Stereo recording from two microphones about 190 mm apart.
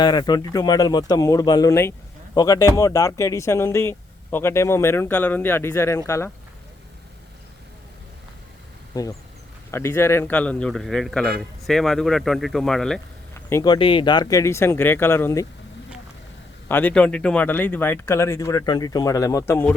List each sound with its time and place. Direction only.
0.0 s speech: 20° left (ahead or behind)
9.7 s a man's voice: 15° left (ahead or behind)
13.3 s speech: 15° left (ahead or behind)
16.6 s speech: 10° left (ahead or behind)